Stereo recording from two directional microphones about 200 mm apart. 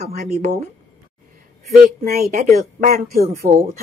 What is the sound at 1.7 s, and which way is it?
Speech, 45° right (ahead or behind).